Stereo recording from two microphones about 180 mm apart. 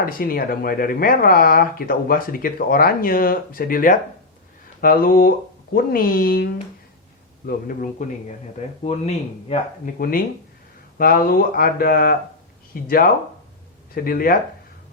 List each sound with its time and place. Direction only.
0.0 s speech: 55° left (ahead or behind)
8.8 s speech: 35° left (ahead or behind)
9.8 s speech: 55° left (ahead or behind)